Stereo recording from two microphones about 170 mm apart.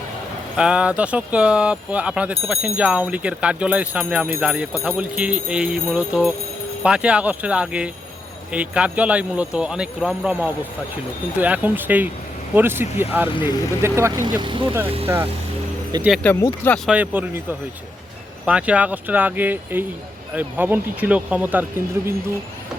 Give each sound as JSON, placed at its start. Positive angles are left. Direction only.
{"t": 0.5, "sound": "speech", "side_deg": -5}
{"t": 16.2, "sound": "speech", "side_deg": 10}
{"t": 16.8, "sound": "speech", "side_deg": -10}
{"t": 18.4, "sound": "speech", "side_deg": -5}